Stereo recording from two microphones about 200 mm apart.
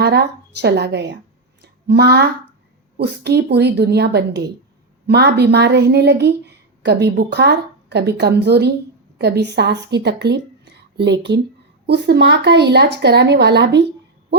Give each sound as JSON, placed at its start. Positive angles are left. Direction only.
{"t": 0.0, "sound": "speech", "side_deg": -55}
{"t": 1.6, "sound": "a sound", "side_deg": -55}
{"t": 3.0, "sound": "speech", "side_deg": -55}